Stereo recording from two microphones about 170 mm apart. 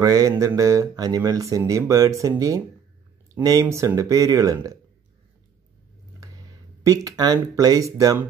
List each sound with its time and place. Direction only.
0.0 s speech: 20° right (ahead or behind)
6.8 s speech: 20° right (ahead or behind)